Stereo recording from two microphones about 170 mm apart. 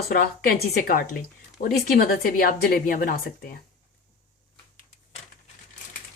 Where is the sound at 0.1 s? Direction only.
60° left (ahead or behind).